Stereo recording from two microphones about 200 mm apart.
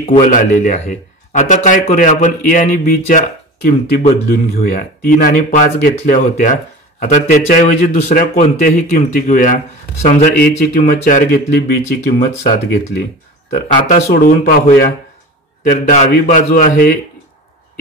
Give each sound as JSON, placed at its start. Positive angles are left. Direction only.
{"t": 0.0, "sound": "a man's voice", "side_deg": 40}
{"t": 13.5, "sound": "a man's voice", "side_deg": 40}